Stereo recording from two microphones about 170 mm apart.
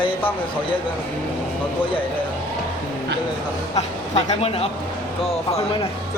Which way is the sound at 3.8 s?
40° left (ahead or behind).